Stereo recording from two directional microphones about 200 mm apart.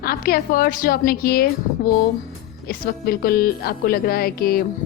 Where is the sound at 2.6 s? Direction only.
50° left (ahead or behind).